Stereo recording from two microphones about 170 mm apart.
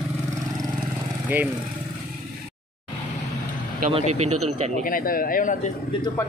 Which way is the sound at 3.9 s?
40° right (ahead or behind).